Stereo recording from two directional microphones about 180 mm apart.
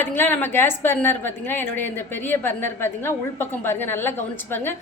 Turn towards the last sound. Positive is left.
turn(degrees=10)  # may be behind; listen again after turning